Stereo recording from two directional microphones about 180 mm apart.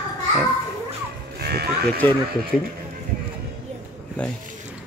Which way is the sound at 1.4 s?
60° right (ahead or behind).